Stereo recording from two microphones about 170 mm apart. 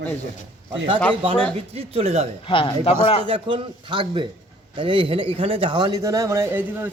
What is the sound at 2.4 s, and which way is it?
Speech, 30° left (ahead or behind).